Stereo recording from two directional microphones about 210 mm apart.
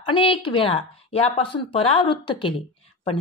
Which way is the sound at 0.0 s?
25° left (ahead or behind).